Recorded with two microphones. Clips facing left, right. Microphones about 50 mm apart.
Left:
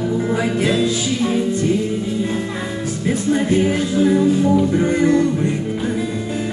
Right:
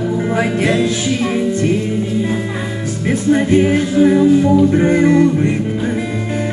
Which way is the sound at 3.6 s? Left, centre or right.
Right.